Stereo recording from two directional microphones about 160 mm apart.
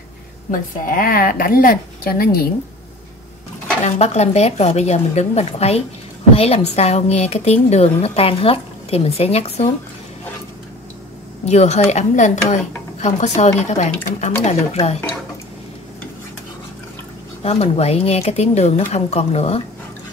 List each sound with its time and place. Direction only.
0.5 s a woman's voice: 60° left (ahead or behind)
3.8 s a woman's voice: 45° left (ahead or behind)
11.4 s a woman's voice: 45° left (ahead or behind)
17.4 s speech: 40° left (ahead or behind)